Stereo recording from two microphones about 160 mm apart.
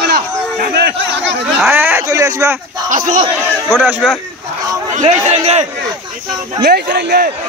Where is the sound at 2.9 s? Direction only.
55° right (ahead or behind).